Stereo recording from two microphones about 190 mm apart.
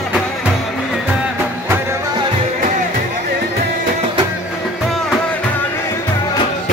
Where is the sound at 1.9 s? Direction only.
25° right (ahead or behind).